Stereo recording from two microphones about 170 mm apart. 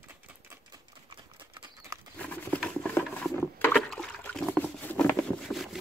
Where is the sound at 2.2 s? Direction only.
5° left (ahead or behind).